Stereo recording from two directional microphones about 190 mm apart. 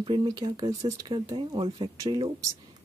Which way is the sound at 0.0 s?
25° right (ahead or behind).